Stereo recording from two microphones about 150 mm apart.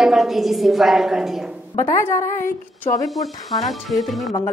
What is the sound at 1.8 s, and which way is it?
Speech, 15° left (ahead or behind).